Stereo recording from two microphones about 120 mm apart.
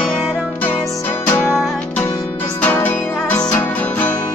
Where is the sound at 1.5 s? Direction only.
Centre (ahead or behind).